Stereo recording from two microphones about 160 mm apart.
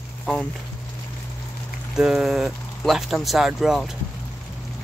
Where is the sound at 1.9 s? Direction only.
5° right (ahead or behind).